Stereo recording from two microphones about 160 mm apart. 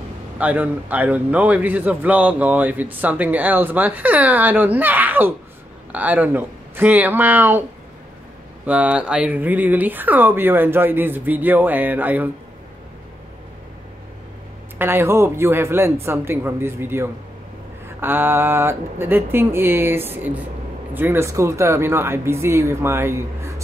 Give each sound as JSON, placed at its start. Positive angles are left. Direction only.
{"t": 0.4, "sound": "speech", "side_deg": -10}
{"t": 8.6, "sound": "speech", "side_deg": -10}
{"t": 14.8, "sound": "speech", "side_deg": -15}